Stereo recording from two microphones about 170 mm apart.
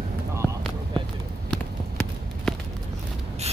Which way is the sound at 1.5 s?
5° left (ahead or behind).